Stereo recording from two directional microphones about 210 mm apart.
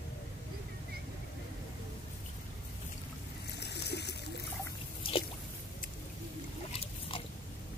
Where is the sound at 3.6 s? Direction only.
50° left (ahead or behind).